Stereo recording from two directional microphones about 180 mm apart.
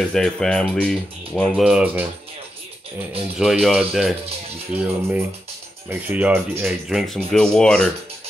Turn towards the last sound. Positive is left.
turn(degrees=5)  # may be behind; listen again after turning